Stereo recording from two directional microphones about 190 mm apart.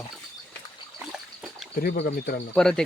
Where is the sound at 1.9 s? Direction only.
45° left (ahead or behind).